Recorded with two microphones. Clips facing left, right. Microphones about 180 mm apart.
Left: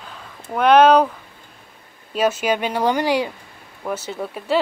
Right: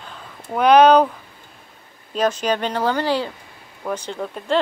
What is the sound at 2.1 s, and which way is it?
Speech, 10° left (ahead or behind).